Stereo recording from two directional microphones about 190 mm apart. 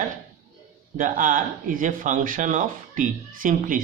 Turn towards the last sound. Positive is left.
turn(degrees=-45)  # may be behind; listen again after turning